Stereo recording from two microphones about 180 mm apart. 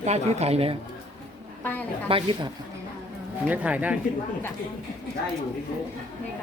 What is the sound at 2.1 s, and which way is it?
Speech, 30° right (ahead or behind).